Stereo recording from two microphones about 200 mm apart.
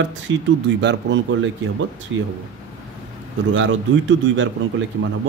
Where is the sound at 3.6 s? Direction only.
70° right (ahead or behind).